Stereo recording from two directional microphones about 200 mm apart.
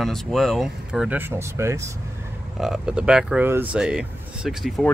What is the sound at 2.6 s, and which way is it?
Speech, 5° right (ahead or behind).